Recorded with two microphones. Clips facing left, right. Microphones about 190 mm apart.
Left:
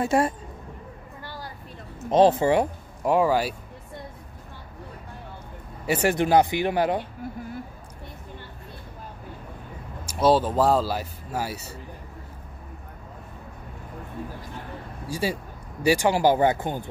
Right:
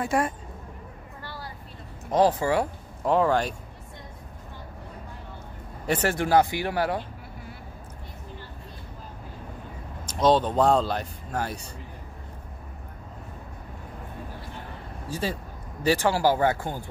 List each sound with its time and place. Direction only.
0.0 s speech: 25° left (ahead or behind)
2.0 s speech: 25° left (ahead or behind); by 3.5 s 5° left (ahead or behind)
5.9 s speech: 15° left (ahead or behind)
10.0 s a man's voice: 10° left (ahead or behind)
15.0 s speech: 10° left (ahead or behind)